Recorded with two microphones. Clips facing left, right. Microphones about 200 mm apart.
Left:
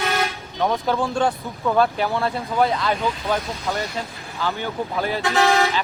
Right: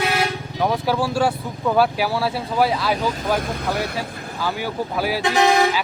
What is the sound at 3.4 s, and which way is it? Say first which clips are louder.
Speech: right 4 dB; 50° right (ahead or behind).